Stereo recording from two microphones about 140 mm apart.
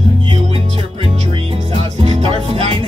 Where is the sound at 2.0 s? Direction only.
45° right (ahead or behind).